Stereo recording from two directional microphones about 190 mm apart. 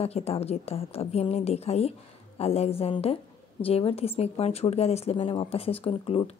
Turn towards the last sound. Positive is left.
turn(degrees=30)  # may be behind; listen again after turning